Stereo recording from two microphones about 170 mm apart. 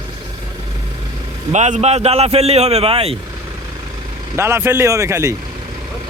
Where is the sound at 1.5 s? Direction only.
45° right (ahead or behind).